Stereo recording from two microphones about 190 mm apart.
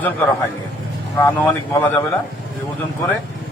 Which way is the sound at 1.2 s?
10° left (ahead or behind).